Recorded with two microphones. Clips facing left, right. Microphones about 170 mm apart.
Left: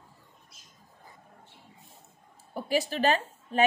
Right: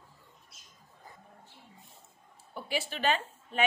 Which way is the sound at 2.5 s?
40° left (ahead or behind).